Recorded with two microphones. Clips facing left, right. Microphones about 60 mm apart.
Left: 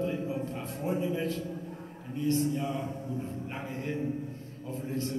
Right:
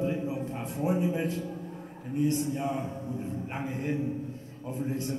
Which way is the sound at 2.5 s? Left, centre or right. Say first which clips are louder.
Right 1 dB; right.